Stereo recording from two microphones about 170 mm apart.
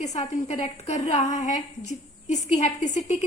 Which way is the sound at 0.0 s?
40° left (ahead or behind).